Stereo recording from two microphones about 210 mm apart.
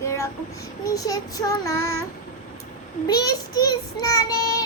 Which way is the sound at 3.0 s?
20° left (ahead or behind).